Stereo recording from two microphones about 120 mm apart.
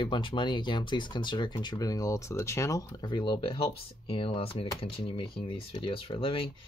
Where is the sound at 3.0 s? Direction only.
45° left (ahead or behind).